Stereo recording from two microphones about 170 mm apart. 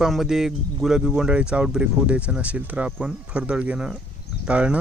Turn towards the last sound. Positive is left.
turn(degrees=-5)  # may be behind; listen again after turning